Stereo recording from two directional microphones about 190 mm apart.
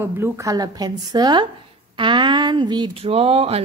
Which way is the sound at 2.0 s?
25° right (ahead or behind).